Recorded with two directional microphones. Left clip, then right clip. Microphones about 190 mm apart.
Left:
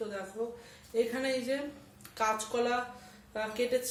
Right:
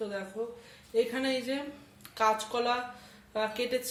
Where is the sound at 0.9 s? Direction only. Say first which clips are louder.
Right 2 dB; 20° right (ahead or behind).